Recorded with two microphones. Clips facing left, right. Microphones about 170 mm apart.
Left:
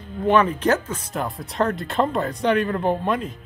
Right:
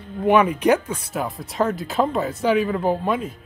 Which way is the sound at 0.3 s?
10° right (ahead or behind).